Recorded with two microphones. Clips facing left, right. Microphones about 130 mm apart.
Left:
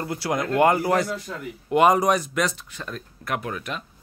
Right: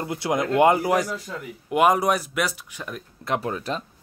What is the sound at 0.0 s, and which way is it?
Speech, 20° right (ahead or behind).